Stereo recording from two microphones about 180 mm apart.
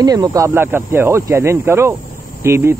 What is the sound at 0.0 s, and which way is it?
Speech, 20° right (ahead or behind).